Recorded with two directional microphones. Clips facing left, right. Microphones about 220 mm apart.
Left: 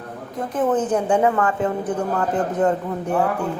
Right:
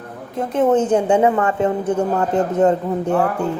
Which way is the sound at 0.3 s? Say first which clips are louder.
Right 5 dB; 25° right (ahead or behind).